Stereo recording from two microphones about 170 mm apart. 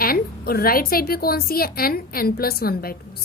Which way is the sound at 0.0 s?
60° left (ahead or behind).